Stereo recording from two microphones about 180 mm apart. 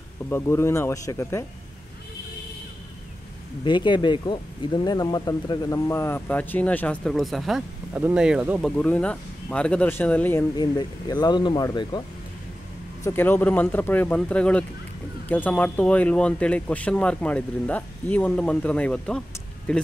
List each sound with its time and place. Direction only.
0.3 s speech: 15° left (ahead or behind)
3.6 s speech: 25° left (ahead or behind); by 8.7 s 5° right (ahead or behind)
8.7 s speech: 5° left (ahead or behind)
10.5 s speech: 20° left (ahead or behind)
13.0 s speech: 10° left (ahead or behind)